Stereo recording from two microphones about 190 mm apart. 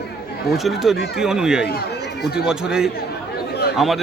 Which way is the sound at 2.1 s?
55° left (ahead or behind).